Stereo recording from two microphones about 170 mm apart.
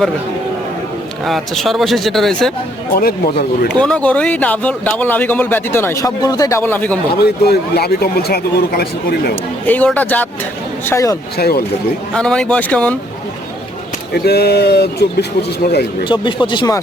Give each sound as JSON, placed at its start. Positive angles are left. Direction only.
{"t": 1.2, "sound": "speech", "side_deg": 0}
{"t": 2.9, "sound": "speech", "side_deg": 60}
{"t": 3.7, "sound": "speech", "side_deg": 5}
{"t": 7.1, "sound": "speech", "side_deg": 70}
{"t": 9.6, "sound": "speech", "side_deg": 10}
{"t": 11.3, "sound": "speech", "side_deg": 65}
{"t": 12.1, "sound": "speech", "side_deg": 5}
{"t": 14.1, "sound": "speech", "side_deg": 70}
{"t": 16.0, "sound": "speech", "side_deg": 30}